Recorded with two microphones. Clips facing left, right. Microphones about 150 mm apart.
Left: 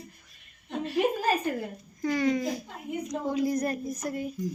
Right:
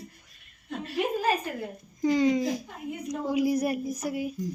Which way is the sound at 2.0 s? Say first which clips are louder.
Right 3 dB; 15° right (ahead or behind).